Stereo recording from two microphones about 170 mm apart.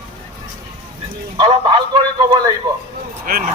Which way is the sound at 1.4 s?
30° right (ahead or behind).